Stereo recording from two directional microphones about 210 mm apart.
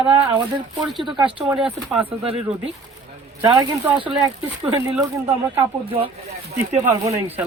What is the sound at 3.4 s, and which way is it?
Speech, 15° right (ahead or behind).